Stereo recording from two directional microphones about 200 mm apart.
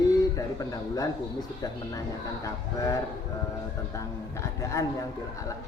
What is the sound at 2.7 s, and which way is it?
Speech, 15° left (ahead or behind).